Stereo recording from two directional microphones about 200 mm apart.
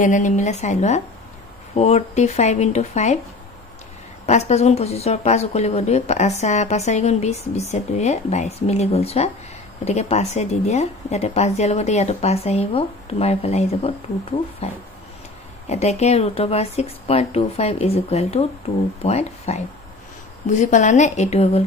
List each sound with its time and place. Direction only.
0.0 s speech: 40° left (ahead or behind)
4.3 s speech: 35° left (ahead or behind)